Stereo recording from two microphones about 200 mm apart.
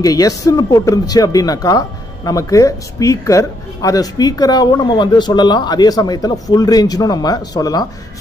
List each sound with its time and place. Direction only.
0.0 s speech: 15° left (ahead or behind)